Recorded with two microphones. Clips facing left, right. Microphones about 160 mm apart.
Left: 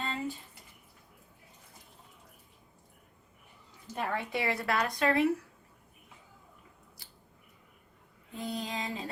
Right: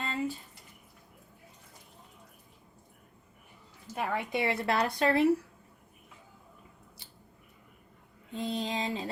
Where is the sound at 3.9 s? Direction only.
20° right (ahead or behind).